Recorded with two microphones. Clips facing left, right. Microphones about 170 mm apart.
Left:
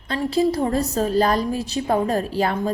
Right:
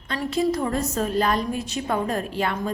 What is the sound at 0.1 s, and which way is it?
A woman's voice, 30° left (ahead or behind).